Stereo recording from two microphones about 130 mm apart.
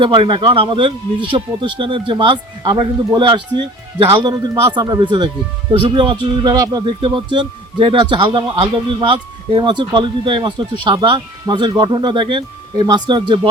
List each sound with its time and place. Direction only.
0.0 s speech: 40° right (ahead or behind)